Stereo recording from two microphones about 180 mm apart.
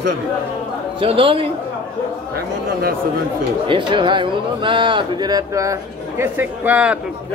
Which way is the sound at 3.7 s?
25° right (ahead or behind).